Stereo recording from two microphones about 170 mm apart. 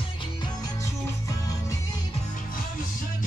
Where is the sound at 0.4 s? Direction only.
20° left (ahead or behind).